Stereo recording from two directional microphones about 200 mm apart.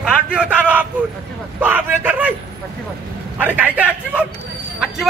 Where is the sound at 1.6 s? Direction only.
10° right (ahead or behind).